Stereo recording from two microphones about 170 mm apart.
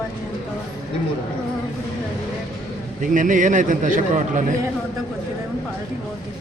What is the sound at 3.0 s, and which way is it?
A man's voice, 50° right (ahead or behind).